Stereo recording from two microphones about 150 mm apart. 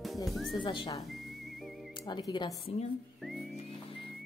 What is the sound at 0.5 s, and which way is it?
Speech, 30° left (ahead or behind).